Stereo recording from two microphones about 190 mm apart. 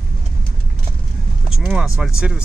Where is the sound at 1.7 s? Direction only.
5° right (ahead or behind).